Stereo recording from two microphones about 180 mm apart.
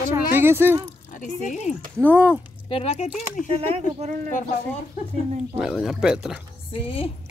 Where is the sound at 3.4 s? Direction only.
35° right (ahead or behind).